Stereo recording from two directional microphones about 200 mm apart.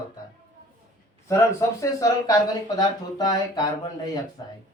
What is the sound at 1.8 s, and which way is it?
Speech, 15° left (ahead or behind).